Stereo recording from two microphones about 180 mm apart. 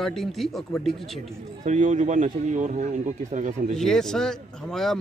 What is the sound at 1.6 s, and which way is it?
A man's voice, 45° right (ahead or behind).